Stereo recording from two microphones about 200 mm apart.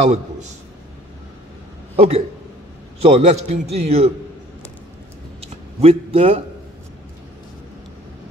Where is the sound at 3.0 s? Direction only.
30° right (ahead or behind).